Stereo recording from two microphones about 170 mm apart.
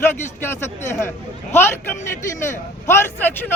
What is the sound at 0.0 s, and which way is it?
Speech, 15° left (ahead or behind).